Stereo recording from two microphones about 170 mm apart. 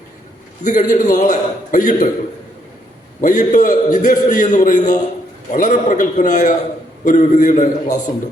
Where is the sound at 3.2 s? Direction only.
50° left (ahead or behind).